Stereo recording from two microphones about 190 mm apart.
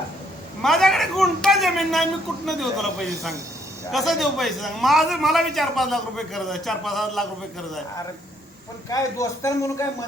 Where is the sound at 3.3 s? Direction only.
15° right (ahead or behind).